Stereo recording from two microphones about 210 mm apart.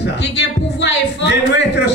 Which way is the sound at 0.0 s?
55° left (ahead or behind).